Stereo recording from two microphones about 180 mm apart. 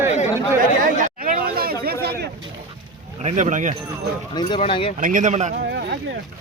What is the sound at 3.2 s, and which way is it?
Speech, 45° right (ahead or behind).